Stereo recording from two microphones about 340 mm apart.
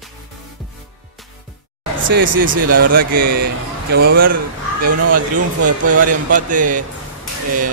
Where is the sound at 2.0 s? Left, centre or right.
Right.